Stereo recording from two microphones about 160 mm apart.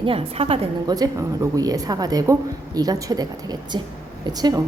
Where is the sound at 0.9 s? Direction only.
20° right (ahead or behind).